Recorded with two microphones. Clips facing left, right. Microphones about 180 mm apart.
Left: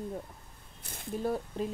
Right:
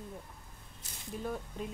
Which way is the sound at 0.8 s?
55° left (ahead or behind).